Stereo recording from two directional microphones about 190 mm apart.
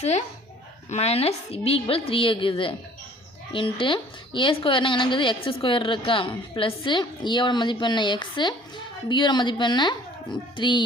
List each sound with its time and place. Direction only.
0.9 s a woman's voice: 35° left (ahead or behind)